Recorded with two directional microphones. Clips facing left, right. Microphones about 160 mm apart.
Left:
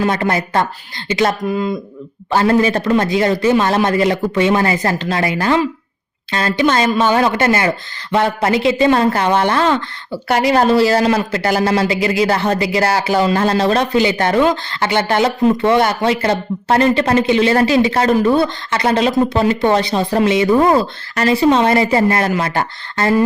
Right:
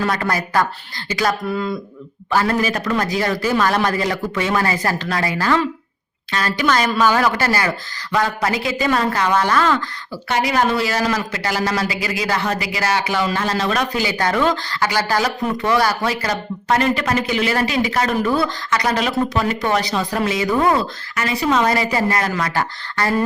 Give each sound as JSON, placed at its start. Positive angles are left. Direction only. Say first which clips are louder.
{"t": 0.0, "sound": "a man's voice", "louder": "left 4 dB", "side_deg": 25}